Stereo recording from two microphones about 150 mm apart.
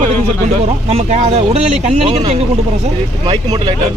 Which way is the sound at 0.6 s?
45° right (ahead or behind).